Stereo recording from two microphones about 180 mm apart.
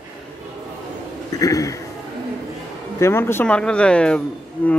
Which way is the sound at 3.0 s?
15° left (ahead or behind).